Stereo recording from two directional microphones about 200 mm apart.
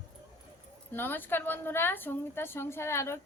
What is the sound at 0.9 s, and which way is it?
A woman's voice, 10° left (ahead or behind).